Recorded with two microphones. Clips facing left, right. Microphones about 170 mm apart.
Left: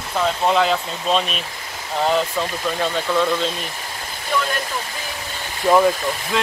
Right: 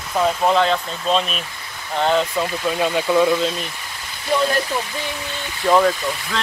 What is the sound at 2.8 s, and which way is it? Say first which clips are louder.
Speech: right 4 dB; 10° right (ahead or behind).